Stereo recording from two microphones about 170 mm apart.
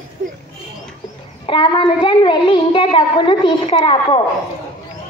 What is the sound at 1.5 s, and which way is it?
A child's voice, 30° left (ahead or behind).